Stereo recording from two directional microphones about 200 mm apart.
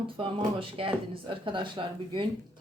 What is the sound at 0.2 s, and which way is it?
Speech, 25° right (ahead or behind).